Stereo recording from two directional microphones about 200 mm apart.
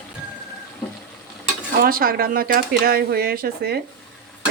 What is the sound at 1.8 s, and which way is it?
Speech, 45° right (ahead or behind).